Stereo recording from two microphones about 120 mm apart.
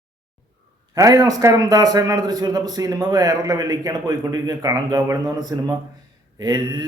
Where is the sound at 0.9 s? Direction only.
30° right (ahead or behind).